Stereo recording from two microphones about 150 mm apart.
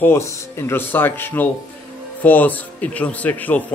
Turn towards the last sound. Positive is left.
turn(degrees=10)  # may be behind; listen again after turning